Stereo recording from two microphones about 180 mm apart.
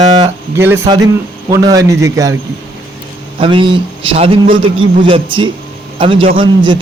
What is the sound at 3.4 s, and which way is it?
A man's voice, 30° right (ahead or behind).